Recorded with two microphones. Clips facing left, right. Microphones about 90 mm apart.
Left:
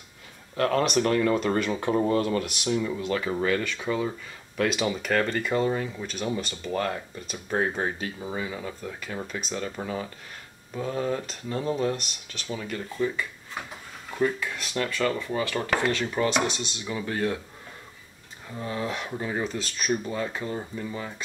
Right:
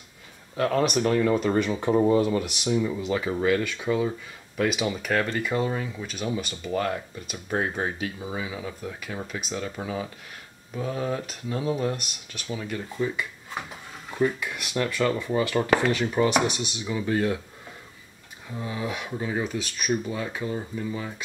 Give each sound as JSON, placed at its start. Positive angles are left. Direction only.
{"t": 0.6, "sound": "speech", "side_deg": -5}
{"t": 18.5, "sound": "speech", "side_deg": -10}